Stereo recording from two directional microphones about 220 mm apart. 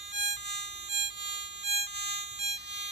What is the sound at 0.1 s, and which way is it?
Siren, 55° right (ahead or behind).